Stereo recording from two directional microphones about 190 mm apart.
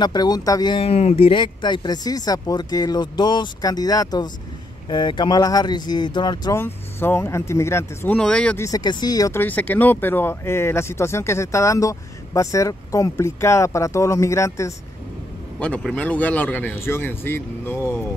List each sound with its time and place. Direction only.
0.0 s speech: 20° left (ahead or behind)
8.6 s speech: 20° left (ahead or behind)